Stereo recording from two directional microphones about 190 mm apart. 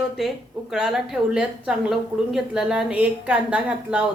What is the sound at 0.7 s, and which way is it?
A woman's voice, centre (ahead or behind).